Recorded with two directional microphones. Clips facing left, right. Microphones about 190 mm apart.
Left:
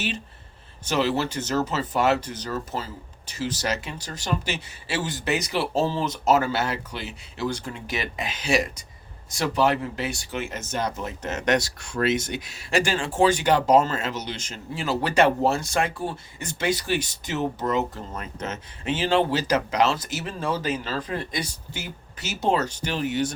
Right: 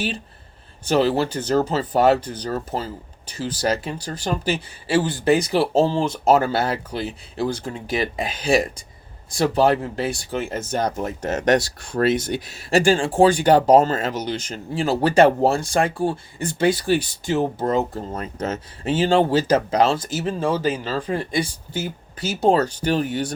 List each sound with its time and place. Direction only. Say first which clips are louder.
0.9 s speech: right 5 dB; 35° right (ahead or behind)